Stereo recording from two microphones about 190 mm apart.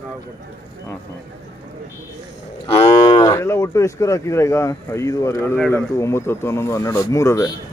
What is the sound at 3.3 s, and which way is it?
Speech, 15° left (ahead or behind).